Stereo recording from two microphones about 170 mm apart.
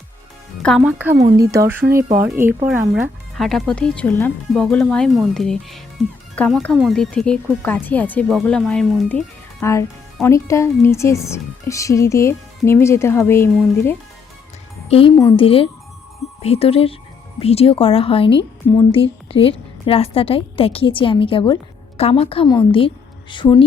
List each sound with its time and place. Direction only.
0.6 s speech: 5° left (ahead or behind)
1.1 s speech: 20° right (ahead or behind)
2.9 s speech: centre (ahead or behind)
9.6 s speech: 15° left (ahead or behind)
14.8 s speech: 35° left (ahead or behind)
15.1 s a woman's voice: 20° left (ahead or behind)
15.4 s a woman's voice: 35° left (ahead or behind)